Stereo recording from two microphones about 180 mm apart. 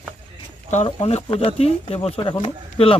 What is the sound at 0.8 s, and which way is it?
Speech, 30° left (ahead or behind).